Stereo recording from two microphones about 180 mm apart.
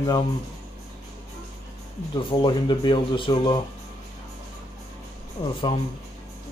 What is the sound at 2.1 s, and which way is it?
Speech, 25° left (ahead or behind).